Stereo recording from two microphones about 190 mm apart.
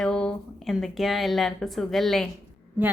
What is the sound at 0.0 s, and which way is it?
A woman's voice, 5° left (ahead or behind).